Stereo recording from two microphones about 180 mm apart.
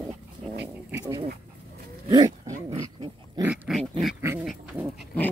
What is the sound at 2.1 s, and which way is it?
Dog, 20° right (ahead or behind).